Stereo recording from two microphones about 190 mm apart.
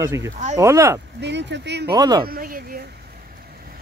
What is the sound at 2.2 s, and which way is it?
Speech, 50° right (ahead or behind).